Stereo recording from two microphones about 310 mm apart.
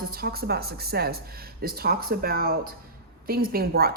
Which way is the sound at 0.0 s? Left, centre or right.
Right.